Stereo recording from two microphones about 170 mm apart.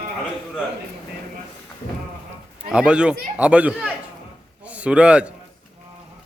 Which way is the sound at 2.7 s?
5° right (ahead or behind).